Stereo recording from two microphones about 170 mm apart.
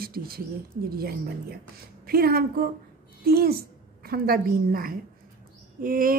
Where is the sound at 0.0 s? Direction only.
60° right (ahead or behind).